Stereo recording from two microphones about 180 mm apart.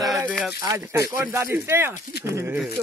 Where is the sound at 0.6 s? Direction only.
20° right (ahead or behind).